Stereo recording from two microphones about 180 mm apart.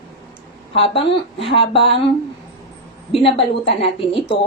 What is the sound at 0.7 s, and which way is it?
A woman's voice, 35° left (ahead or behind).